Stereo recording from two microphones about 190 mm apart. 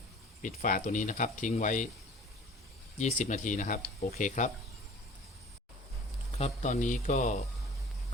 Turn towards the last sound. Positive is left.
turn(degrees=40)  # may be behind; listen again after turning